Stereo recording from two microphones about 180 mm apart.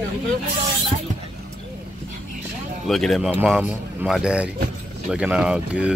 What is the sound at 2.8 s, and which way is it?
Speech, centre (ahead or behind).